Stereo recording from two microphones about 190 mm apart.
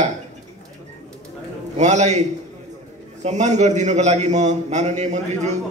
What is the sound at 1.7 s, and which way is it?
Speech, 35° right (ahead or behind).